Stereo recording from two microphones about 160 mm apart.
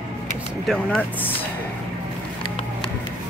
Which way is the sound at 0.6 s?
5° left (ahead or behind).